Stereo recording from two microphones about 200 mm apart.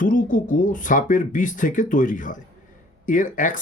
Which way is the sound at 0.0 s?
40° left (ahead or behind).